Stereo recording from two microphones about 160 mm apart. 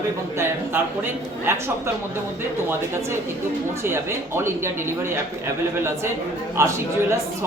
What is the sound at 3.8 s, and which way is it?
Speech, 15° right (ahead or behind).